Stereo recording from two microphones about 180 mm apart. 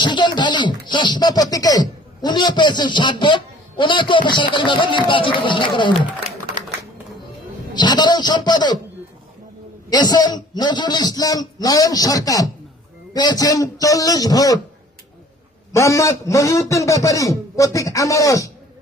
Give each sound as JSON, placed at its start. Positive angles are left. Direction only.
{"t": 0.0, "sound": "speech", "side_deg": 25}
{"t": 7.7, "sound": "speech", "side_deg": 25}
{"t": 9.9, "sound": "speech", "side_deg": 20}
{"t": 15.7, "sound": "a man's voice", "side_deg": 15}